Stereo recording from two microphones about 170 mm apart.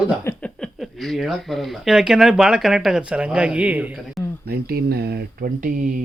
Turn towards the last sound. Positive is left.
turn(degrees=-55)  # may be behind; listen again after turning